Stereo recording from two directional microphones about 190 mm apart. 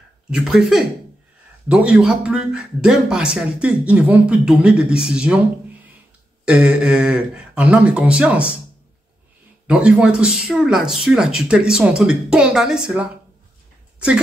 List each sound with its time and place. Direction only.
0.3 s a man's voice: centre (ahead or behind)
6.4 s speech: 5° right (ahead or behind)
9.7 s a man's voice: 5° right (ahead or behind)